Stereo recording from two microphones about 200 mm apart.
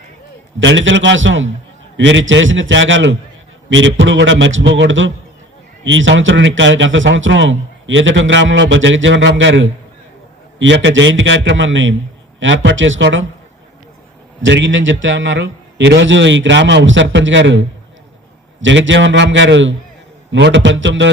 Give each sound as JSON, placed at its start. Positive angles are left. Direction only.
{"t": 0.6, "sound": "a man's voice", "side_deg": -70}
{"t": 14.4, "sound": "a man's voice", "side_deg": -70}